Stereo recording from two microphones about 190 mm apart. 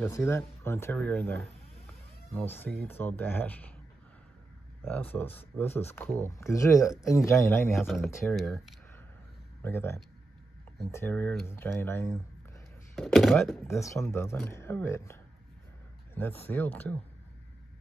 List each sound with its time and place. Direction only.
0.0 s speech: 15° left (ahead or behind)
2.3 s speech: 10° left (ahead or behind)
4.8 s speech: 10° left (ahead or behind)
7.7 s speech: centre (ahead or behind)
9.6 s speech: 15° left (ahead or behind)
12.9 s speech: centre (ahead or behind)
13.7 s speech: 15° left (ahead or behind)
16.2 s speech: 10° left (ahead or behind)